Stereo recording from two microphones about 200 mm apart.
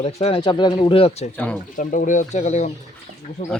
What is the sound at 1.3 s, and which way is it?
Speech, 5° left (ahead or behind).